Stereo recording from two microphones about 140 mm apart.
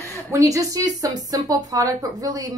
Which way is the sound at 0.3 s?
20° right (ahead or behind).